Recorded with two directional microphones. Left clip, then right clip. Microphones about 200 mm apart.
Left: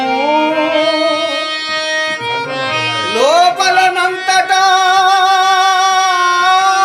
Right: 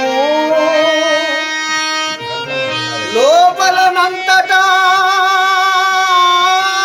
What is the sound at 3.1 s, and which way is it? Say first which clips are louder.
Music: right 2 dB; 15° left (ahead or behind).